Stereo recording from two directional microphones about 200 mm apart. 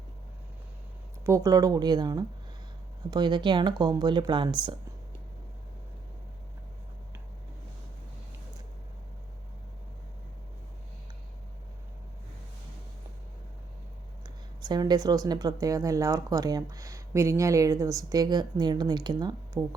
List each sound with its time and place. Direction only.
1.2 s speech: 15° right (ahead or behind)
14.6 s speech: 20° right (ahead or behind)